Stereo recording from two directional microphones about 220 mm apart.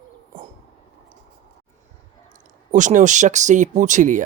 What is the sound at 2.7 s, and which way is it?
Speech, 35° right (ahead or behind).